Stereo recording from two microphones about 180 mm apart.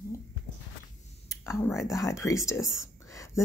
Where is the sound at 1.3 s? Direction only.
15° left (ahead or behind).